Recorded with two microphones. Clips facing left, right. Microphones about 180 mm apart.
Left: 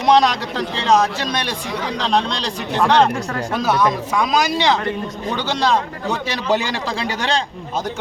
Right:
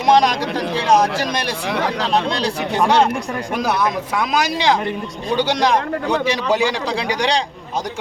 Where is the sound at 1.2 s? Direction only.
10° right (ahead or behind).